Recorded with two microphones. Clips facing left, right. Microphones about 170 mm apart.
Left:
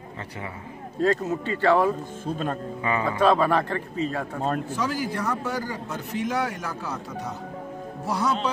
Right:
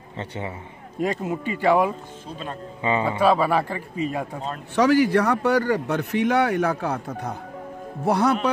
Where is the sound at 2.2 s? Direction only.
50° left (ahead or behind).